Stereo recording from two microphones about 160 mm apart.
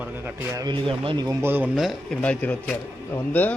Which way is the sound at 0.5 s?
25° right (ahead or behind).